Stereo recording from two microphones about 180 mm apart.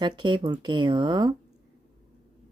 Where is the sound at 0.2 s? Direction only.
25° right (ahead or behind).